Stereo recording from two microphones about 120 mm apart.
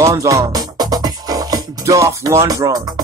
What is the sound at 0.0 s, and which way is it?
Music, 25° right (ahead or behind).